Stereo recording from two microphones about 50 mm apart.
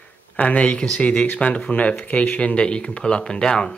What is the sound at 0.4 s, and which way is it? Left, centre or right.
Speech, left.